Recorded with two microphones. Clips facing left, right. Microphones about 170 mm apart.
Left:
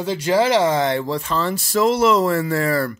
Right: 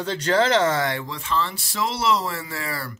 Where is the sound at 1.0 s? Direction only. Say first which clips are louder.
Left 5 dB; 40° left (ahead or behind).